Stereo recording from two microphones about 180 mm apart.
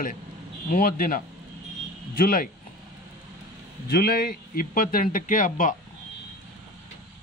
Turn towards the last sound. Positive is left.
turn(degrees=45)  # may be behind; listen again after turning